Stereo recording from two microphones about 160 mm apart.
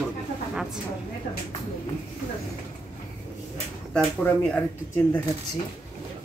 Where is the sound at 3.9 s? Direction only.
5° left (ahead or behind).